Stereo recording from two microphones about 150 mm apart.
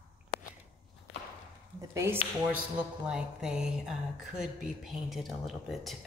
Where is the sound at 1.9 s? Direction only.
15° right (ahead or behind).